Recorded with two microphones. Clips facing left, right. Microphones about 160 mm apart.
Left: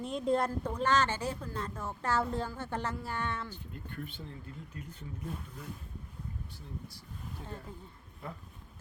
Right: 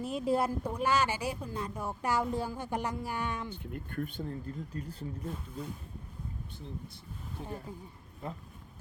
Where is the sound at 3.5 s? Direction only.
55° right (ahead or behind); by 5.0 s 35° right (ahead or behind).